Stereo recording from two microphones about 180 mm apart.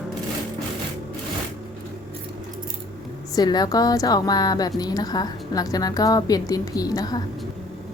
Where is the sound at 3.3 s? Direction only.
20° left (ahead or behind).